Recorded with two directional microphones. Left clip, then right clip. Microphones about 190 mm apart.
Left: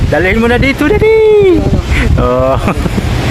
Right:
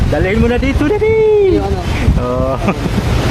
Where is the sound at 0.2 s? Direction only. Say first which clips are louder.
Left 5 dB; 30° left (ahead or behind).